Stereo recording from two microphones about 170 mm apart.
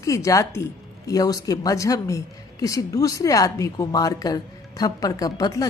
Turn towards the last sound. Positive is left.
turn(degrees=20)  # may be behind; listen again after turning